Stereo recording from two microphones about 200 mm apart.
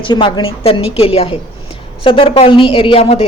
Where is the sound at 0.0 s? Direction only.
25° left (ahead or behind).